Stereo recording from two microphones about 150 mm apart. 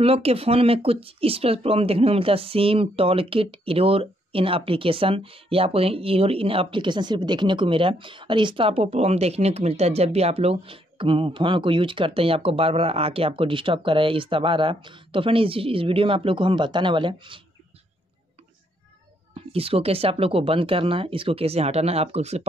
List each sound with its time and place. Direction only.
0.0 s speech: 40° right (ahead or behind)
19.3 s speech: 40° right (ahead or behind)